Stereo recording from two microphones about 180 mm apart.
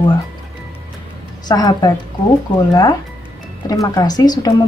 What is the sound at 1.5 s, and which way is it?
Speech, 20° left (ahead or behind).